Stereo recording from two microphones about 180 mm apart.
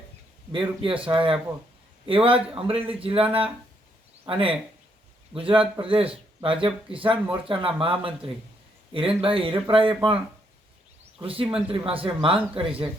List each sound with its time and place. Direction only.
0.5 s a man's voice: 30° right (ahead or behind)
4.3 s speech: 30° right (ahead or behind)
11.2 s a man's voice: 30° right (ahead or behind)